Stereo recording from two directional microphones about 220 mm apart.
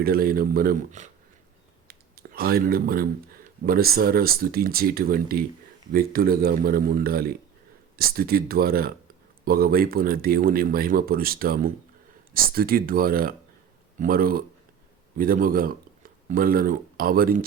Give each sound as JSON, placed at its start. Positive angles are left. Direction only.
{"t": 0.0, "sound": "speech", "side_deg": -45}
{"t": 1.9, "sound": "speech", "side_deg": -45}